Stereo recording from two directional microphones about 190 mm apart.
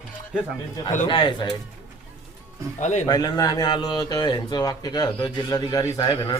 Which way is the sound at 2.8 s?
40° left (ahead or behind).